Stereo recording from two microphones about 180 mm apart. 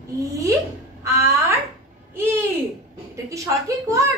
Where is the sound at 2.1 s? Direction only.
15° right (ahead or behind).